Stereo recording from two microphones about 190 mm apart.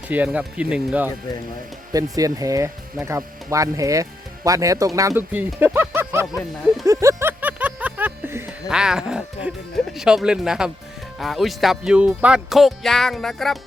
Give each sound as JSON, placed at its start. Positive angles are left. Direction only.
{"t": 0.1, "sound": "speech", "side_deg": -5}
{"t": 1.9, "sound": "speech", "side_deg": -20}
{"t": 6.8, "sound": "a sound", "side_deg": -15}
{"t": 11.2, "sound": "speech", "side_deg": 0}